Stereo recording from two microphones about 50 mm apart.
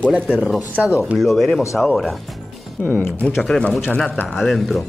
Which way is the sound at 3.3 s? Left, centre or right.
Centre.